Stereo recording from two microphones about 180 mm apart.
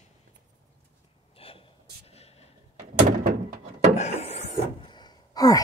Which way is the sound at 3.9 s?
40° left (ahead or behind).